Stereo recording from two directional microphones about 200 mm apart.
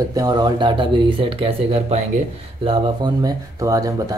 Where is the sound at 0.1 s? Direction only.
20° right (ahead or behind).